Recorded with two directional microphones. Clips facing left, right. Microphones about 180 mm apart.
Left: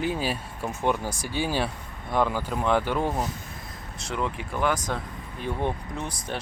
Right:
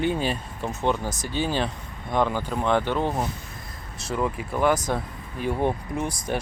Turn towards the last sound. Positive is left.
turn(degrees=-10)  # may be behind; listen again after turning